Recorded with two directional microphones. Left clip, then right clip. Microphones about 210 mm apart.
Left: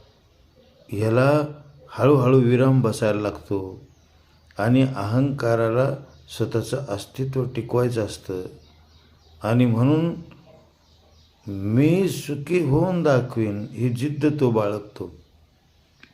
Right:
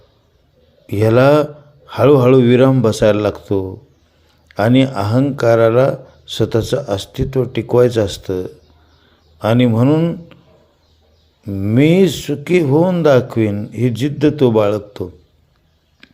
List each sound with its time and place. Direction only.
0.9 s speech: 35° right (ahead or behind)
11.4 s speech: 25° right (ahead or behind)
16.0 s a sound: 25° right (ahead or behind)